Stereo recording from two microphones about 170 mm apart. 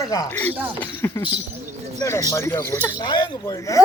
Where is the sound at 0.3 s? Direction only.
10° left (ahead or behind).